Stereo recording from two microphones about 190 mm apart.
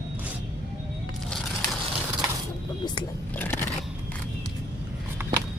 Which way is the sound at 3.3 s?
10° left (ahead or behind).